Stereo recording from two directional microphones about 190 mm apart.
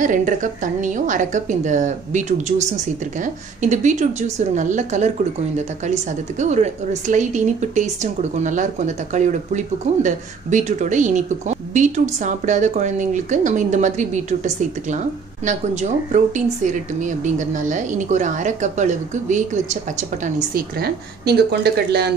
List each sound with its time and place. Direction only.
0.0 s a woman's voice: 45° right (ahead or behind); by 22.1 s 60° right (ahead or behind)